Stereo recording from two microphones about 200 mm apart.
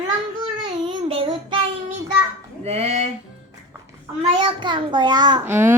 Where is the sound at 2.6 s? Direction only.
35° right (ahead or behind).